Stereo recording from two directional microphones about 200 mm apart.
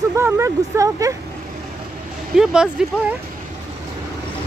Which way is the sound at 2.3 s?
5° right (ahead or behind).